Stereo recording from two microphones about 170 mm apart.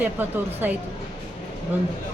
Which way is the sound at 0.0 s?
10° right (ahead or behind).